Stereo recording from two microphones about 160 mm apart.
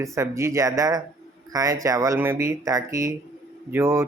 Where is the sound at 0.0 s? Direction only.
20° right (ahead or behind).